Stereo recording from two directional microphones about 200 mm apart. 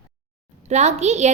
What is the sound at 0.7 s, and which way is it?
Speech, 35° right (ahead or behind).